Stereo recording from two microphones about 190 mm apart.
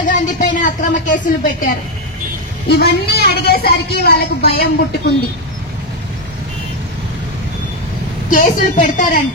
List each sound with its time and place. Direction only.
0.1 s speech: 40° left (ahead or behind)
2.7 s a woman's voice: 55° left (ahead or behind)
8.3 s a woman's voice: 45° left (ahead or behind)